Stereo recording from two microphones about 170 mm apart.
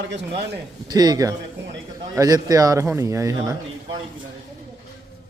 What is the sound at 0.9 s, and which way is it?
A man's voice, 25° right (ahead or behind).